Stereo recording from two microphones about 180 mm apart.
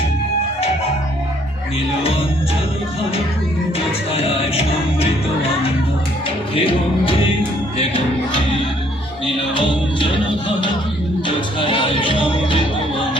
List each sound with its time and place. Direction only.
4.1 s music: 35° left (ahead or behind)
9.6 s music: 30° left (ahead or behind)
11.6 s music: 30° left (ahead or behind)